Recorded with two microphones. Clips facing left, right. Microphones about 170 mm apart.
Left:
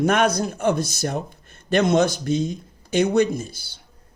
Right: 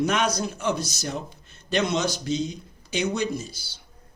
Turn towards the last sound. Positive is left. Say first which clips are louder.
# left 7 dB
turn(degrees=55)  # may be behind; listen again after turning